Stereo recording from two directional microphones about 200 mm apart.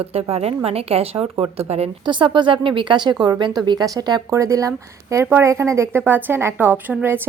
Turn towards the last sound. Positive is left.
turn(degrees=-10)  # may be behind; listen again after turning